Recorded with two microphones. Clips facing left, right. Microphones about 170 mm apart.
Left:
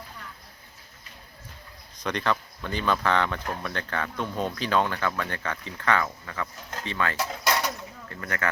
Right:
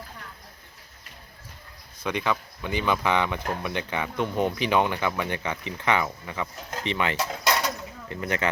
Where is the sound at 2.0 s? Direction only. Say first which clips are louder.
Even; 10° right (ahead or behind).